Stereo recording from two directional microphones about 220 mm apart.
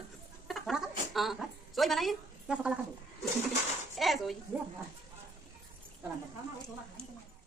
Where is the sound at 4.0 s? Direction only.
Centre (ahead or behind).